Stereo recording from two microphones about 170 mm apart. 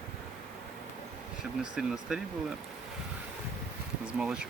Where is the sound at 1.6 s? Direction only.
5° right (ahead or behind).